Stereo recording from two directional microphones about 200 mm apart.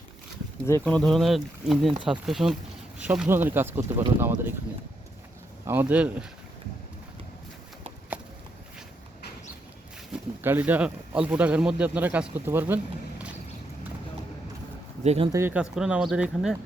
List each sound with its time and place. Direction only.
0.6 s speech: 10° left (ahead or behind); by 4.0 s 10° right (ahead or behind)
5.6 s speech: 10° right (ahead or behind)
10.1 s speech: 10° right (ahead or behind)
15.0 s speech: 35° right (ahead or behind)
15.3 s speech: 10° right (ahead or behind)